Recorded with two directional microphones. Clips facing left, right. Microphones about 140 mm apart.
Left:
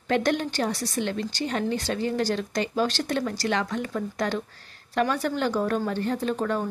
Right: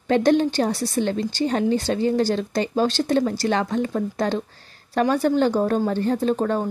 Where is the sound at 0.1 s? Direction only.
30° right (ahead or behind).